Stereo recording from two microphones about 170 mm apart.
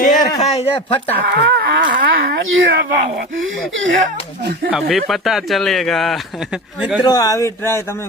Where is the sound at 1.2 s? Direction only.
90° right.